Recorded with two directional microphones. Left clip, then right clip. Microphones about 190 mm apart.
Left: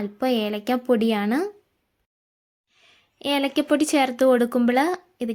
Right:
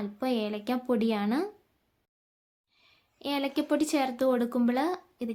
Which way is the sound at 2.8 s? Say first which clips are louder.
Left 8 dB; 30° left (ahead or behind).